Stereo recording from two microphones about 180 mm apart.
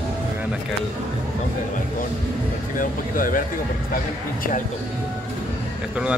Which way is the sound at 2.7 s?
50° left (ahead or behind).